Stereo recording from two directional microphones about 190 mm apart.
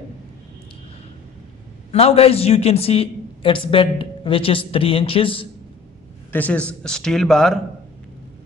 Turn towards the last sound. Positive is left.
turn(degrees=5)  # may be behind; listen again after turning